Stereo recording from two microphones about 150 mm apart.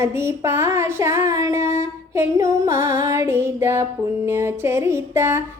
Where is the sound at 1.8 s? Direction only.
20° right (ahead or behind).